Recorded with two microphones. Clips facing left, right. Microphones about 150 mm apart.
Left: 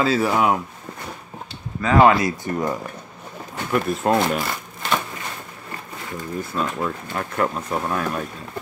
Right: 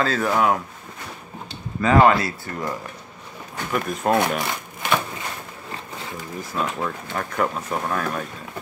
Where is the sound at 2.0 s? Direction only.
20° left (ahead or behind).